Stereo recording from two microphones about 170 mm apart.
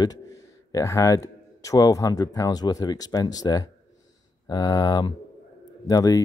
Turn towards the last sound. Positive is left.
turn(degrees=20)  # may be behind; listen again after turning